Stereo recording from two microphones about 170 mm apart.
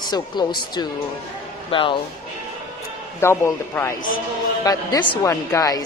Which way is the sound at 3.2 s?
15° left (ahead or behind).